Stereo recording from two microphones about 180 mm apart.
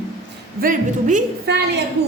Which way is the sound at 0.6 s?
45° right (ahead or behind).